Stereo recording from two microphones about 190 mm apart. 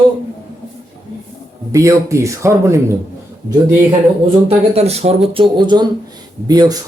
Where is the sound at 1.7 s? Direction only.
15° right (ahead or behind).